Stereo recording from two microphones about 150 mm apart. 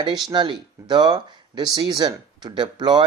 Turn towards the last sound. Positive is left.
turn(degrees=-30)  # may be behind; listen again after turning